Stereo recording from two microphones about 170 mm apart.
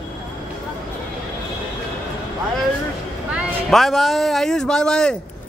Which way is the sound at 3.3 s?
Centre (ahead or behind).